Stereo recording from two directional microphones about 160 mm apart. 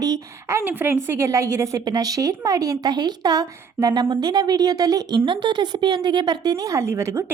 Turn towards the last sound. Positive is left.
turn(degrees=-15)  # may be behind; listen again after turning